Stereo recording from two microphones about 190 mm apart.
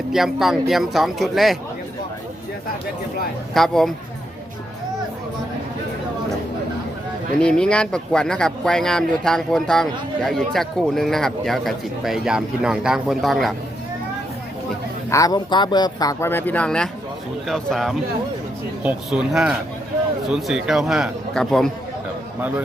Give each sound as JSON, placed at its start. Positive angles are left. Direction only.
{"t": 0.1, "sound": "speech", "side_deg": 0}
{"t": 3.5, "sound": "speech", "side_deg": 0}
{"t": 7.4, "sound": "speech", "side_deg": 5}
{"t": 15.1, "sound": "speech", "side_deg": 20}
{"t": 22.4, "sound": "a man's voice", "side_deg": -10}